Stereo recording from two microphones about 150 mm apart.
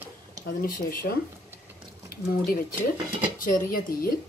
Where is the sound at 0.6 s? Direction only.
85° left.